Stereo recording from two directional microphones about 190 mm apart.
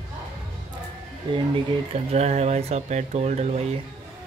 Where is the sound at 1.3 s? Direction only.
30° right (ahead or behind).